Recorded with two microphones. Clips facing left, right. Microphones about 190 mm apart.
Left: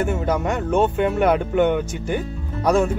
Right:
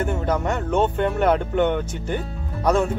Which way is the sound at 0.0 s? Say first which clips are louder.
Left 1 dB; 10° left (ahead or behind).